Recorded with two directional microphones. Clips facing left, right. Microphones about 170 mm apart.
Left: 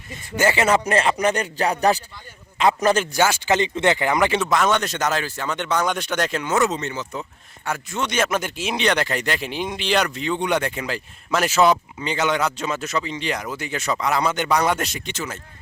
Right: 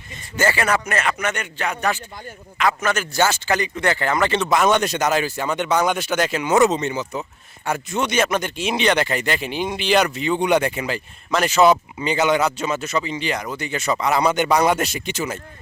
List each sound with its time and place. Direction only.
0.3 s a man's voice: 20° left (ahead or behind)
3.1 s speech: 10° left (ahead or behind)
3.5 s speech: 25° left (ahead or behind)
4.4 s speech: 10° right (ahead or behind)
8.1 s speech: centre (ahead or behind)
14.2 s speech: 15° right (ahead or behind)